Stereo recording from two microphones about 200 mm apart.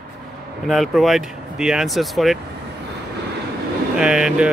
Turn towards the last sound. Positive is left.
turn(degrees=-5)  # may be behind; listen again after turning